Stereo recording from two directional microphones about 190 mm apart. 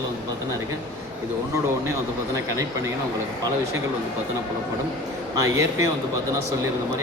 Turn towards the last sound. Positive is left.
turn(degrees=-15)  # may be behind; listen again after turning